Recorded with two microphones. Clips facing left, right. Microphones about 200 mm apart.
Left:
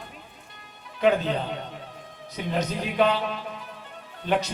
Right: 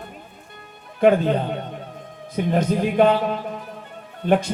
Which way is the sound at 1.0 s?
50° right (ahead or behind).